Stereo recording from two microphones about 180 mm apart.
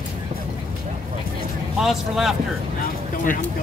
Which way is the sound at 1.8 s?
Centre (ahead or behind).